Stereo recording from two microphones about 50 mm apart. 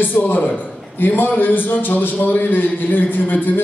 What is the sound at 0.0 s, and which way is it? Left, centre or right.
A man's voice, left.